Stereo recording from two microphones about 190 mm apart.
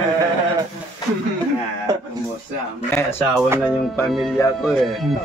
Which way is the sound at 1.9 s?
20° right (ahead or behind).